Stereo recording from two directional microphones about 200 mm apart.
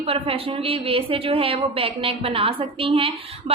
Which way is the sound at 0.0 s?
30° right (ahead or behind).